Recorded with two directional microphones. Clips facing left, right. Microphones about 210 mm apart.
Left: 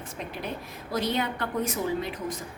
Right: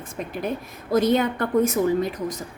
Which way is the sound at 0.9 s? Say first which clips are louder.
Right 9 dB; 50° right (ahead or behind).